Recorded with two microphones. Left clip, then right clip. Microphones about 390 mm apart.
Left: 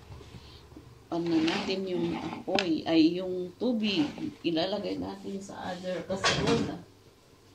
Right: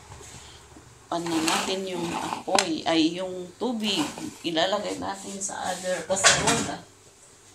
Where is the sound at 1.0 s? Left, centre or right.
Right.